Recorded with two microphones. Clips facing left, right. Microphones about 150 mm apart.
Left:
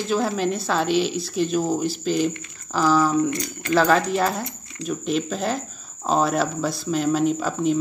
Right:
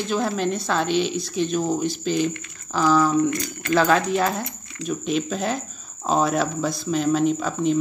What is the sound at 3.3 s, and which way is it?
Speech, 25° left (ahead or behind).